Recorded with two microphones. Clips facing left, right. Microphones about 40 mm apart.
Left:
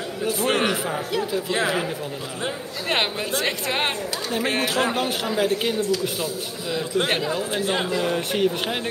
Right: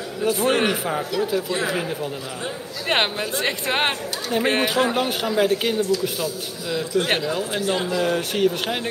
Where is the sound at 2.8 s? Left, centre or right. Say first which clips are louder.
Right 2 dB; centre.